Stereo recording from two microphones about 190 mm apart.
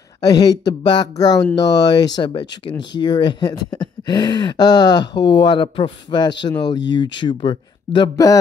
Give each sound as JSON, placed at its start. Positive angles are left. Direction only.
{"t": 0.2, "sound": "speech", "side_deg": 20}